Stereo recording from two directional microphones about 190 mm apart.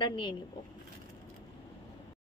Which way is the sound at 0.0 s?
25° left (ahead or behind).